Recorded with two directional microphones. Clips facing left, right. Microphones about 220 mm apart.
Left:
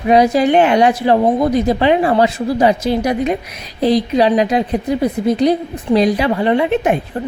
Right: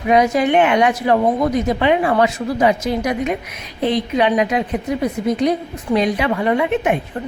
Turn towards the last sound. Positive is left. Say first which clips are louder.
# left 3 dB
turn(degrees=30)  # may be behind; listen again after turning